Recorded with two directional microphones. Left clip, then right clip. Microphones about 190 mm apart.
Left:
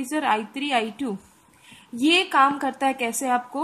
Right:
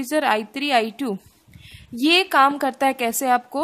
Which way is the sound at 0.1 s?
50° right (ahead or behind).